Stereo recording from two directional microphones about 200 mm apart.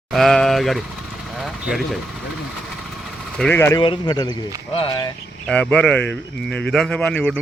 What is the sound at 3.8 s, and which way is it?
Speech, 20° left (ahead or behind).